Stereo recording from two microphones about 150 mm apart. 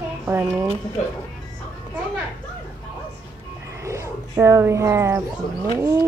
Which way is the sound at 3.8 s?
20° right (ahead or behind).